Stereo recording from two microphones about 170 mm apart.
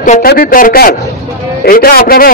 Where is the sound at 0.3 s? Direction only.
60° left (ahead or behind).